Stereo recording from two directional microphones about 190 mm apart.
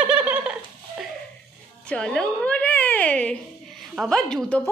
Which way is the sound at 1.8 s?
5° left (ahead or behind).